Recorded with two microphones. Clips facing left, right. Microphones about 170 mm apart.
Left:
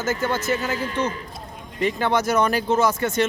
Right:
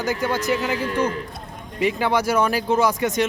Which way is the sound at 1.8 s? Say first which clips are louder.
Right 1 dB; 10° right (ahead or behind).